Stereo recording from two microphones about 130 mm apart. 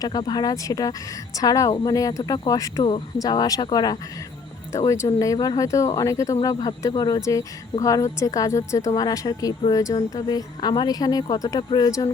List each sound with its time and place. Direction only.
0.0 s speech: 30° left (ahead or behind)